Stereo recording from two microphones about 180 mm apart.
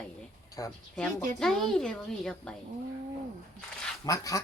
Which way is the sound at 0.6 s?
20° left (ahead or behind).